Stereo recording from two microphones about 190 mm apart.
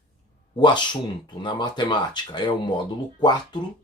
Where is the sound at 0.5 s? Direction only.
25° left (ahead or behind).